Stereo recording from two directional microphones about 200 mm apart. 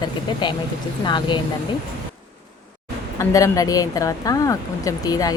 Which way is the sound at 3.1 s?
15° left (ahead or behind).